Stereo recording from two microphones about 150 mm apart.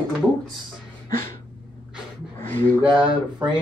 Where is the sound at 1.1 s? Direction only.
70° right (ahead or behind).